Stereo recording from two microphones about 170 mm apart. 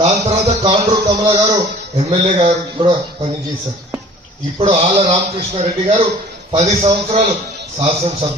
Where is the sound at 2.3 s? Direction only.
35° right (ahead or behind).